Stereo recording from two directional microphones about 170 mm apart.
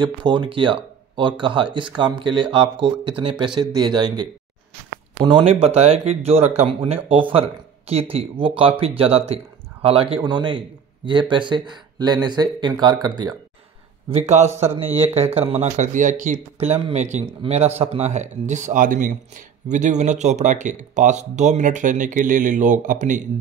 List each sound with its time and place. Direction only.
0.0 s speech: 25° right (ahead or behind)
14.1 s speech: 40° right (ahead or behind)
14.6 s speech: 10° right (ahead or behind)
15.2 s speech: 40° right (ahead or behind)